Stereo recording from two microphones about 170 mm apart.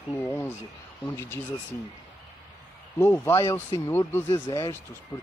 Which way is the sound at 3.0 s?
15° left (ahead or behind).